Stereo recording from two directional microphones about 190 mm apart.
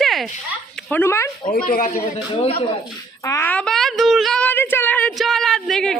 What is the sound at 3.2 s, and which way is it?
A woman's voice, 15° left (ahead or behind).